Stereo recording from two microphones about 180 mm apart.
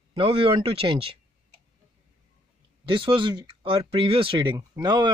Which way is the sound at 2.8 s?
30° right (ahead or behind).